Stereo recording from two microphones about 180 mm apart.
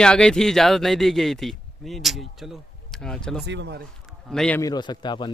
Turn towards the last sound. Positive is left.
turn(degrees=25)  # may be behind; listen again after turning